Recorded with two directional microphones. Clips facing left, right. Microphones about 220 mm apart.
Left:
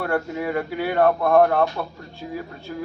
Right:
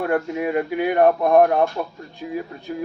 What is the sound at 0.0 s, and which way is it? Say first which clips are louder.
Speech: right 3 dB; 15° right (ahead or behind).